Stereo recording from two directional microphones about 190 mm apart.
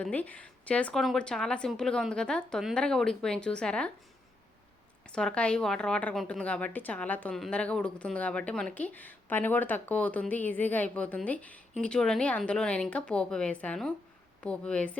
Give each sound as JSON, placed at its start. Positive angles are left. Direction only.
{"t": 0.0, "sound": "speech", "side_deg": 10}
{"t": 5.1, "sound": "a woman's voice", "side_deg": 5}